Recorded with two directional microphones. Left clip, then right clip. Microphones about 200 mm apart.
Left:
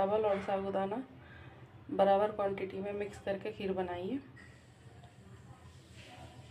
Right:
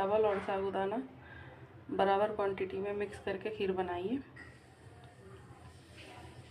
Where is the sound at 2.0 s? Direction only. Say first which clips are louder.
Left 2 dB; 5° left (ahead or behind).